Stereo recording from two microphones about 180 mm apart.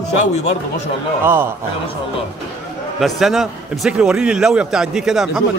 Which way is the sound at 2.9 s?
Centre (ahead or behind).